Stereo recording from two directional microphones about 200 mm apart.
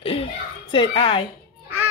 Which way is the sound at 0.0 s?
30° left (ahead or behind).